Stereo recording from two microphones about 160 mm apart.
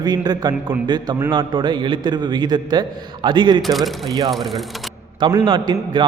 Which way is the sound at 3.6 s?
Centre (ahead or behind).